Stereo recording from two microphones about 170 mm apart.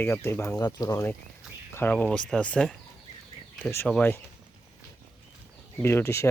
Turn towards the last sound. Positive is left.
turn(degrees=15)  # may be behind; listen again after turning